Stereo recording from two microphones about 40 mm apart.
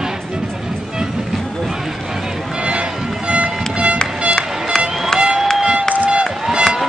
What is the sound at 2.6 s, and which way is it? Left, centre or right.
Music, right.